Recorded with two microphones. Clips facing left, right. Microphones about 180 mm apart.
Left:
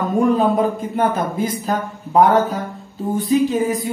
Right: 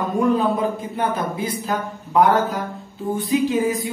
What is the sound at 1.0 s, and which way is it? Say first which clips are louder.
Speech: left 5 dB; 45° left (ahead or behind).